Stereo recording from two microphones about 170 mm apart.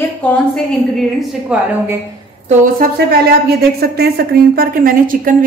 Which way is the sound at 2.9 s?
65° right (ahead or behind).